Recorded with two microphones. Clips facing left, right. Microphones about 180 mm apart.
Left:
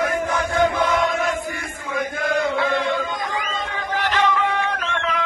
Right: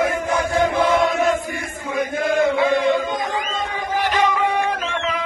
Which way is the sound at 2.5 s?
15° right (ahead or behind).